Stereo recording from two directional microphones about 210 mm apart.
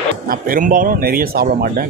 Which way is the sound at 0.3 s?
40° right (ahead or behind).